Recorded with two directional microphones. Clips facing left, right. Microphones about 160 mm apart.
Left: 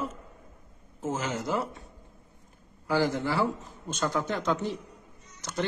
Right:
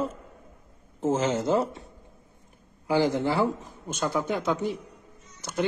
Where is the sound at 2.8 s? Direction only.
20° right (ahead or behind).